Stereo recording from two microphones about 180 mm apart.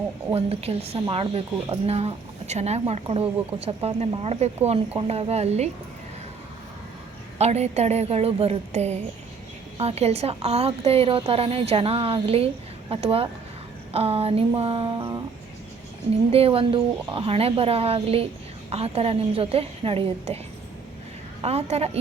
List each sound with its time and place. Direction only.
0.3 s speech: 35° right (ahead or behind)
7.3 s speech: 35° right (ahead or behind)
16.3 s speech: 30° right (ahead or behind)
21.4 s speech: 35° right (ahead or behind)